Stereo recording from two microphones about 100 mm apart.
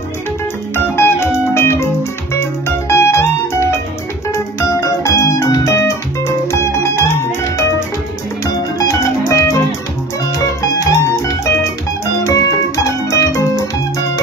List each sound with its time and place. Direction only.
0.7 s music: 25° left (ahead or behind)
2.9 s music: 25° left (ahead or behind)
11.1 s music: 30° left (ahead or behind)